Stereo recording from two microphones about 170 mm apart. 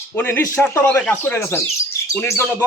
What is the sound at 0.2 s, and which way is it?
Speech, 15° left (ahead or behind).